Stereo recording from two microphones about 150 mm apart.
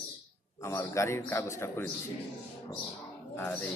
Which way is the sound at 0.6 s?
20° left (ahead or behind).